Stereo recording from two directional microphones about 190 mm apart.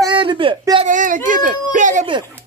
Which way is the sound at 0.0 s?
25° right (ahead or behind).